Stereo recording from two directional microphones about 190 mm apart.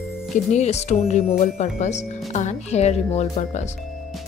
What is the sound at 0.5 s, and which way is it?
Speech, 35° left (ahead or behind).